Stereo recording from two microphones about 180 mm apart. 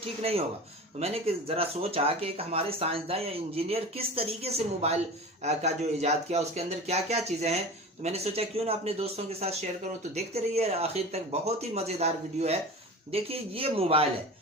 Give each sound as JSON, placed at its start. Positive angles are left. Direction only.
{"t": 0.2, "sound": "speech", "side_deg": -35}